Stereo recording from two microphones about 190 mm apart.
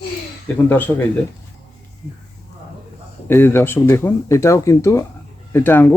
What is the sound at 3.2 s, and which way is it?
Speech, 10° left (ahead or behind).